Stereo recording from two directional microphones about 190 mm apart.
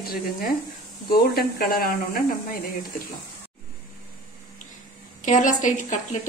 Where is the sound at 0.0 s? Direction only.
50° left (ahead or behind).